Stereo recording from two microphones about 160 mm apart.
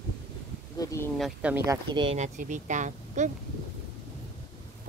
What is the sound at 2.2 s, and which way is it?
Speech, 50° right (ahead or behind).